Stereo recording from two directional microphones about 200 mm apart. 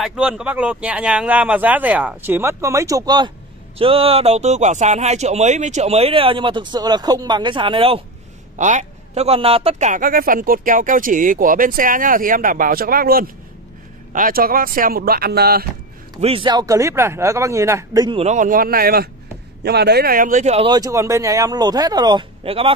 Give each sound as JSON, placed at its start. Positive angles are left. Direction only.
{"t": 0.0, "sound": "speech", "side_deg": -5}
{"t": 8.5, "sound": "a man's voice", "side_deg": -40}
{"t": 16.2, "sound": "speech", "side_deg": -30}
{"t": 18.2, "sound": "a man's voice", "side_deg": -40}